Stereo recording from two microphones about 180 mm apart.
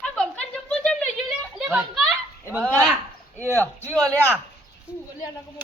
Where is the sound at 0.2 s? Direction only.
5° left (ahead or behind).